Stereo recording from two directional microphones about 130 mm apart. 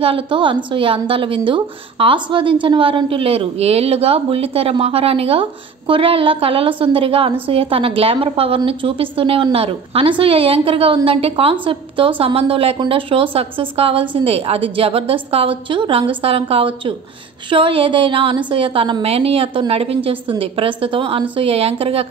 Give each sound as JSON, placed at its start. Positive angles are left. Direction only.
{"t": 0.0, "sound": "a woman's voice", "side_deg": -40}
{"t": 17.5, "sound": "a sound", "side_deg": -40}
{"t": 18.5, "sound": "a woman's voice", "side_deg": -40}